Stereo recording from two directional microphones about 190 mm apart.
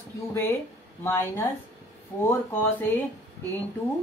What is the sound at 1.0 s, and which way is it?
Speech, 10° left (ahead or behind).